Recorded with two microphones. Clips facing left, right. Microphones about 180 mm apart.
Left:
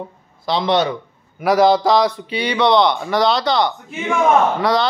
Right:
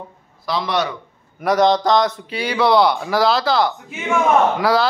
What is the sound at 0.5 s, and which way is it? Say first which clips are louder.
Speech: left 4 dB; 25° left (ahead or behind).